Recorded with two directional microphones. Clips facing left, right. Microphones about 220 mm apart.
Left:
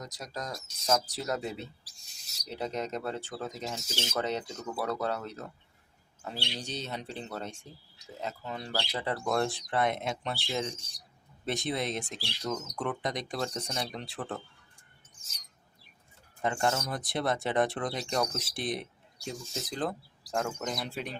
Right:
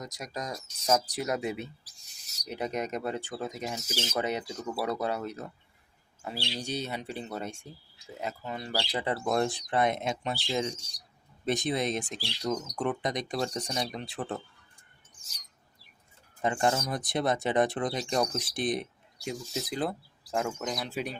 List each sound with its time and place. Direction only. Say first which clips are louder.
0.0 s speech: right 2 dB; 15° right (ahead or behind)
16.4 s speech: right 2 dB; 15° right (ahead or behind)